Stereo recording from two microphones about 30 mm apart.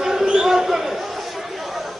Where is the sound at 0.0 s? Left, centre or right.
Centre.